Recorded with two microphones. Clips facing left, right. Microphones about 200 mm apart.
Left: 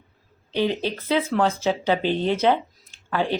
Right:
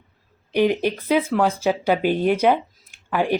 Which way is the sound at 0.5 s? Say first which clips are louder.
Right 4 dB; 15° right (ahead or behind).